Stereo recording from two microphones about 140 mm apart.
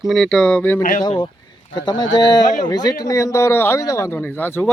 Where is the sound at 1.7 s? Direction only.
30° left (ahead or behind); by 4.7 s 15° left (ahead or behind).